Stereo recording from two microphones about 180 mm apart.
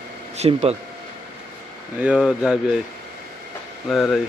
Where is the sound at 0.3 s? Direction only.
35° right (ahead or behind).